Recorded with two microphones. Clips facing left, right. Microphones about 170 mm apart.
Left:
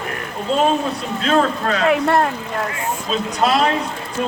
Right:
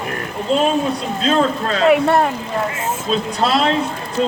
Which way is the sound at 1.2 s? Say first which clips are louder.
Even; 25° right (ahead or behind).